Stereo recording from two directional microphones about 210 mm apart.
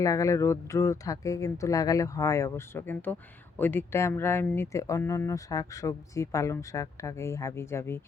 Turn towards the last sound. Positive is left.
turn(degrees=10)  # may be behind; listen again after turning